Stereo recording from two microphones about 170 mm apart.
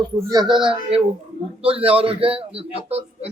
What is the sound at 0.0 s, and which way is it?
A man's voice, 25° right (ahead or behind).